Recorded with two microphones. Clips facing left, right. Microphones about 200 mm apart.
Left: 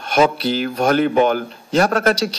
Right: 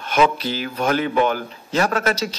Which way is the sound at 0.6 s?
55° left (ahead or behind).